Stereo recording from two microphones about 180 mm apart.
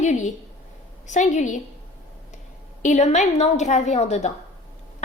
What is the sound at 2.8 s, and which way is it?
A woman's voice, 40° left (ahead or behind).